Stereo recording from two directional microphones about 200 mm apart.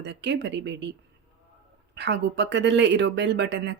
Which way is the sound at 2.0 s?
60° right (ahead or behind).